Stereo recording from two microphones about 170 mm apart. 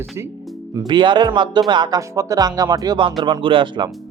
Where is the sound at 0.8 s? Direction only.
25° right (ahead or behind).